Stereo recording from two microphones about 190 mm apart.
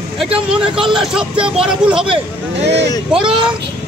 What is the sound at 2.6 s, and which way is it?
Speech, 65° right (ahead or behind).